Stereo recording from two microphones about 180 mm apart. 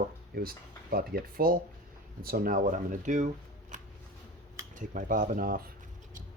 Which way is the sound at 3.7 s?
45° right (ahead or behind).